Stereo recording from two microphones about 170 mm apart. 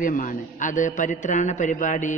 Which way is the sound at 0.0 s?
50° left (ahead or behind).